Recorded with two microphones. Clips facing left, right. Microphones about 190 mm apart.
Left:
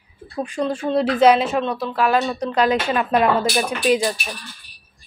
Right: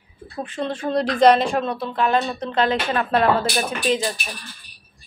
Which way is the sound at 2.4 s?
30° right (ahead or behind).